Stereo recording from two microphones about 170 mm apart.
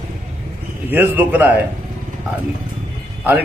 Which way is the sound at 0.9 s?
10° right (ahead or behind).